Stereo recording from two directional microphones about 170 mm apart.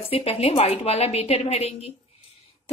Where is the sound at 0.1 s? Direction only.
35° left (ahead or behind).